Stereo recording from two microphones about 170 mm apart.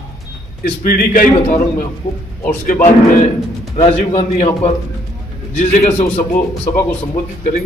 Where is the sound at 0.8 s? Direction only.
55° left (ahead or behind).